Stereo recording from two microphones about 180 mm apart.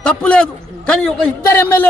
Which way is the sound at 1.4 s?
15° left (ahead or behind).